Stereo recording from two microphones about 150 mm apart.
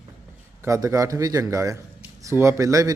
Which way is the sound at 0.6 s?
20° right (ahead or behind).